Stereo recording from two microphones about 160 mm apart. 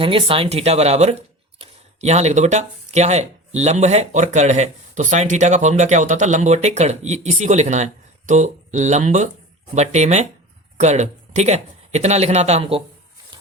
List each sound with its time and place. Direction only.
0.0 s speech: 35° right (ahead or behind)